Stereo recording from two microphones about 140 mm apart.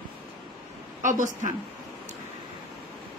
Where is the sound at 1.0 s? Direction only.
65° right (ahead or behind).